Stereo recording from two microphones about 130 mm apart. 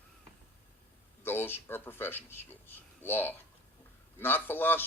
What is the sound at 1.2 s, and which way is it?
A man's voice, 15° left (ahead or behind).